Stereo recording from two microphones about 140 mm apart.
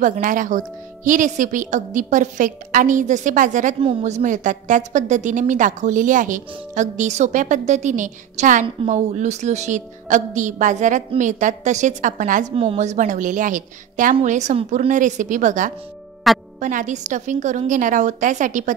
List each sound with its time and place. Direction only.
0.0 s a woman's voice: 65° right (ahead or behind)
12.5 s a woman's voice: 50° right (ahead or behind); by 18.7 s 65° right (ahead or behind)